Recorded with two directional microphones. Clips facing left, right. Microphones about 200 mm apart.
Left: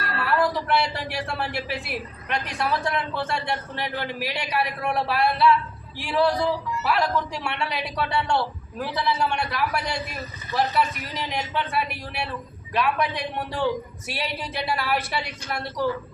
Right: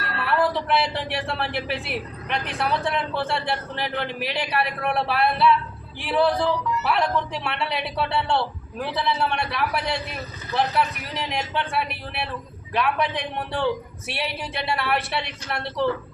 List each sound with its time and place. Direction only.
0.3 s speech: centre (ahead or behind)
12.7 s speech: centre (ahead or behind)